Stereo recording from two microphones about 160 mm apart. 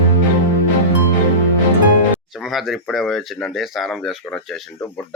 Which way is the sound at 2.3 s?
Centre (ahead or behind).